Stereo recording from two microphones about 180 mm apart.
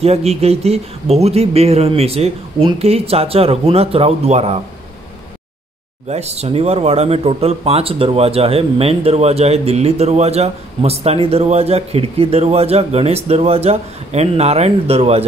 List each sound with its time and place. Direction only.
0.0 s speech: 35° right (ahead or behind)
6.0 s speech: 35° right (ahead or behind)